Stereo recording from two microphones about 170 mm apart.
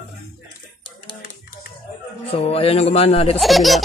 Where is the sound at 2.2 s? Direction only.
35° left (ahead or behind).